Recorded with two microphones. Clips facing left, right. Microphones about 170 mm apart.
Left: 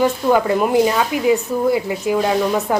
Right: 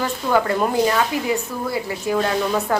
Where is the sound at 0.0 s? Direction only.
15° left (ahead or behind).